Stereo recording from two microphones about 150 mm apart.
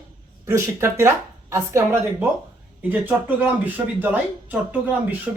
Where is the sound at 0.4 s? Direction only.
20° right (ahead or behind).